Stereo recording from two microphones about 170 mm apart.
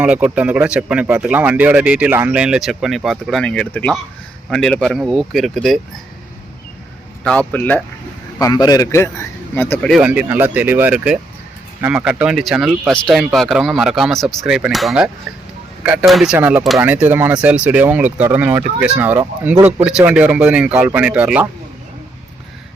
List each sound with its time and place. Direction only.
0.0 s speech: 5° right (ahead or behind)
7.3 s a man's voice: 10° left (ahead or behind)
8.4 s a man's voice: 20° left (ahead or behind)
9.9 s speech: 10° right (ahead or behind)